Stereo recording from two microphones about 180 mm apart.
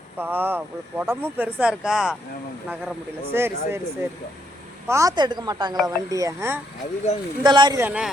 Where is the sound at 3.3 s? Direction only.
15° right (ahead or behind).